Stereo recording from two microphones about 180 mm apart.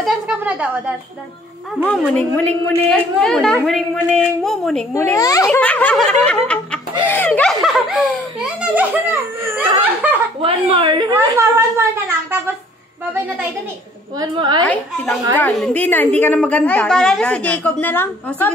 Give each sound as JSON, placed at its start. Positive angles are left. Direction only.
{"t": 0.0, "sound": "speech", "side_deg": 0}
{"t": 1.9, "sound": "a woman's voice", "side_deg": 10}
{"t": 4.9, "sound": "a woman's voice", "side_deg": 15}
{"t": 5.5, "sound": "a woman's voice", "side_deg": 10}
{"t": 10.4, "sound": "a woman's voice", "side_deg": -30}
{"t": 11.1, "sound": "speech", "side_deg": -10}
{"t": 14.2, "sound": "a woman's voice", "side_deg": -25}
{"t": 14.6, "sound": "a woman's voice", "side_deg": 10}